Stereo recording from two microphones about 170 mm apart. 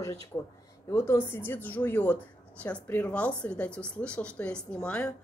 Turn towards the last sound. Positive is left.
turn(degrees=5)  # may be behind; listen again after turning